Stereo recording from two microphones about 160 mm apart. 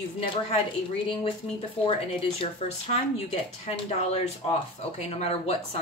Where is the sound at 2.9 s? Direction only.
40° left (ahead or behind).